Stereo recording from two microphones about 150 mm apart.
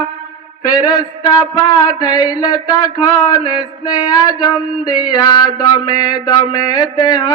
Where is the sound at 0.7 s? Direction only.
25° left (ahead or behind).